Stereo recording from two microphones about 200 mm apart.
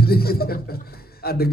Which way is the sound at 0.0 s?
50° left (ahead or behind).